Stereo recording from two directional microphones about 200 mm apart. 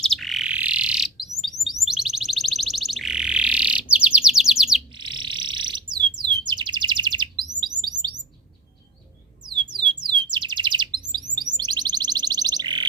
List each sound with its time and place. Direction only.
0.0 s bird: centre (ahead or behind)
4.9 s a sound: 25° right (ahead or behind)
7.8 s chirp: 20° right (ahead or behind)
9.5 s squawk: 25° right (ahead or behind)
10.0 s bird: 20° right (ahead or behind)
11.5 s music: 20° right (ahead or behind)